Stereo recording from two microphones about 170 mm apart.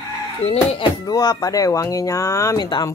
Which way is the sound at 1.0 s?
20° left (ahead or behind).